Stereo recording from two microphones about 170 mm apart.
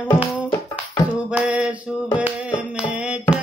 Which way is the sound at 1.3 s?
5° right (ahead or behind).